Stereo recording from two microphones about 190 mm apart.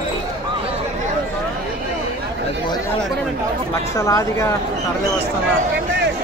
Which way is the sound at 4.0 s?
15° left (ahead or behind).